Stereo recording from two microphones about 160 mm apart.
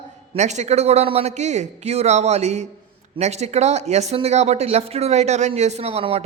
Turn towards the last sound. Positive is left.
turn(degrees=-40)  # may be behind; listen again after turning